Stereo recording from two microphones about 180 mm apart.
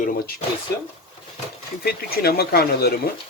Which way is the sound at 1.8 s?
60° left (ahead or behind).